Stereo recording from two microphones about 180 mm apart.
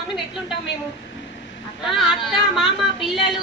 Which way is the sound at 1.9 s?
Centre (ahead or behind).